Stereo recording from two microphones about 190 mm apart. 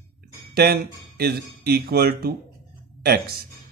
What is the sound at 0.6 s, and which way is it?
Speech, 55° right (ahead or behind).